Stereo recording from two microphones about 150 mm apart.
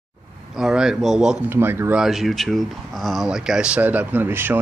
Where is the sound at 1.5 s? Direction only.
15° right (ahead or behind).